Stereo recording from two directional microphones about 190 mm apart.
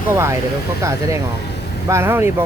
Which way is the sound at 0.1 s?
15° right (ahead or behind).